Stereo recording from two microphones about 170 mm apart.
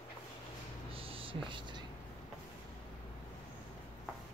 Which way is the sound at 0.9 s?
35° right (ahead or behind).